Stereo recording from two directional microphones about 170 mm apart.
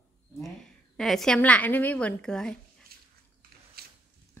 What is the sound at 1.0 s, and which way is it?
Speech, centre (ahead or behind).